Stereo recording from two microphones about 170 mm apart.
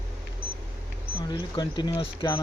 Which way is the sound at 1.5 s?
25° left (ahead or behind).